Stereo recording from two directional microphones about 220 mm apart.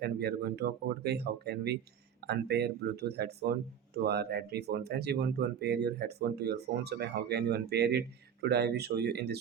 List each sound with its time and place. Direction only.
0.0 s speech: 45° right (ahead or behind)